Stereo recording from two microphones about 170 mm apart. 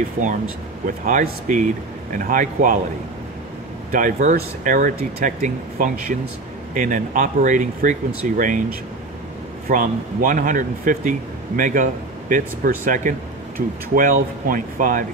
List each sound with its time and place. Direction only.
0.8 s speech: 50° right (ahead or behind)
3.9 s speech: 50° right (ahead or behind)